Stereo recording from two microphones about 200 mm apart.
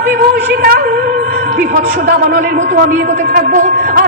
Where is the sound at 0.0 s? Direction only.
50° right (ahead or behind).